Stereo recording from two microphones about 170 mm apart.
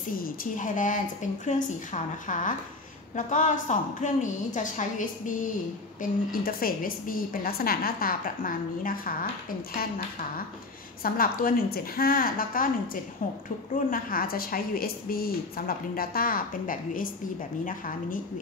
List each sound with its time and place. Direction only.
0.2 s a woman's voice: 50° left (ahead or behind)
11.0 s a woman's voice: 60° left (ahead or behind)